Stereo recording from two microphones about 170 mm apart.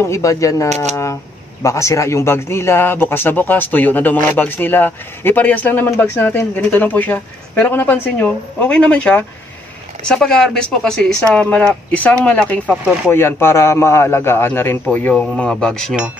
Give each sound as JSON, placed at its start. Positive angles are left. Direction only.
{"t": 0.0, "sound": "speech", "side_deg": 20}